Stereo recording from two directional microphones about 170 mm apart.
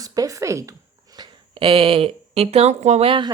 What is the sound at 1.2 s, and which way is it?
Speech, 30° right (ahead or behind).